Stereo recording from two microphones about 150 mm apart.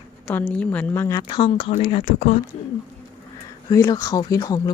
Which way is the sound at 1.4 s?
40° left (ahead or behind).